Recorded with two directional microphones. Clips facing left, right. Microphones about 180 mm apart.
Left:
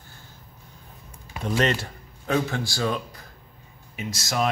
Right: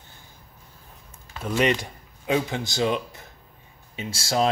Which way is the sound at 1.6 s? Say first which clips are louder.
Right 2 dB; 15° right (ahead or behind).